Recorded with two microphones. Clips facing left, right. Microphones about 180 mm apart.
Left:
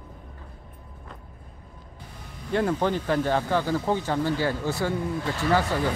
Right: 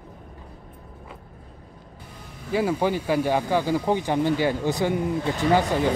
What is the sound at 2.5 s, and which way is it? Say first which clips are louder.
Speech: right 1 dB; 5° right (ahead or behind).